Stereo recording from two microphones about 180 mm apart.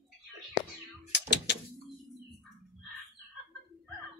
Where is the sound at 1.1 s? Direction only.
75° left (ahead or behind).